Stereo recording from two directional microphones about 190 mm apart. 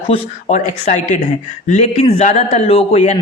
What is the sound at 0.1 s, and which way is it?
Speech, 40° left (ahead or behind).